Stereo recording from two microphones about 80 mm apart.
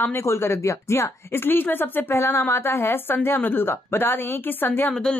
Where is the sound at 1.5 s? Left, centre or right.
Left.